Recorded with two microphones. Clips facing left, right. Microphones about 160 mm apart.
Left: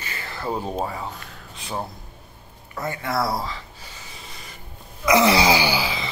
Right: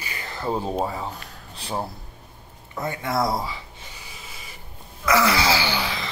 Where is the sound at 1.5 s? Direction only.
35° right (ahead or behind).